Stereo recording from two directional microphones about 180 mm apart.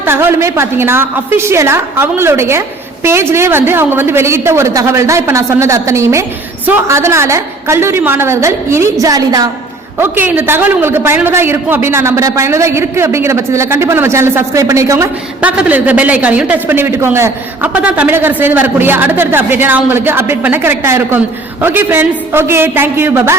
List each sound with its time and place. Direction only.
0.0 s a woman's voice: 15° right (ahead or behind)